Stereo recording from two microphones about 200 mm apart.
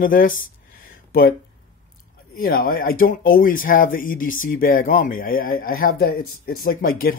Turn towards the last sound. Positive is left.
turn(degrees=45)  # may be behind; listen again after turning